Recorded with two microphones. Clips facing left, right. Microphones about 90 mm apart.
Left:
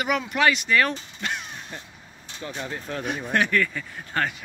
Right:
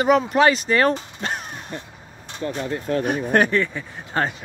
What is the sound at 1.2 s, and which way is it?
Crow, 40° right (ahead or behind).